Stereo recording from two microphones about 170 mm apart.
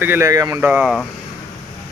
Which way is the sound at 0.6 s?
5° right (ahead or behind).